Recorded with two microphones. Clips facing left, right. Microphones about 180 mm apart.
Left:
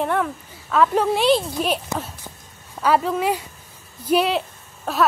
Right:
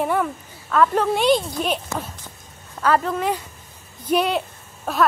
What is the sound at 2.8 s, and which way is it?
A woman's voice, 10° left (ahead or behind).